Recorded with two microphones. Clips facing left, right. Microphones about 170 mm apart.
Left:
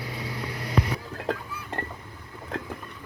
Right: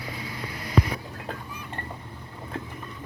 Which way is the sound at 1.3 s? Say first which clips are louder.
Left 8 dB; 90° left.